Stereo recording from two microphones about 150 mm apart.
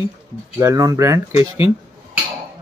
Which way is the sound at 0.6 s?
20° right (ahead or behind).